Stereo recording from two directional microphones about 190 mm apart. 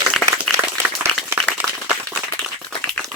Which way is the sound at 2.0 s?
5° left (ahead or behind).